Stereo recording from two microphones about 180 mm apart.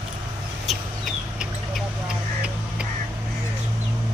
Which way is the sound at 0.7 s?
Centre (ahead or behind).